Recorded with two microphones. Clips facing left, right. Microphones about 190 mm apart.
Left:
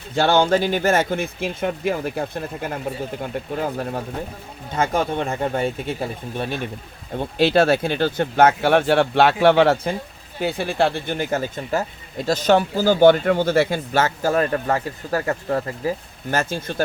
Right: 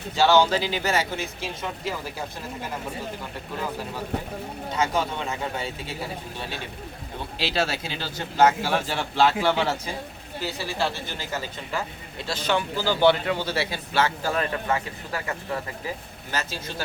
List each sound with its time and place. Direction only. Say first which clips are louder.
0.1 s speech: left 2 dB; 55° left (ahead or behind)
4.7 s speech: left 5 dB; 50° left (ahead or behind)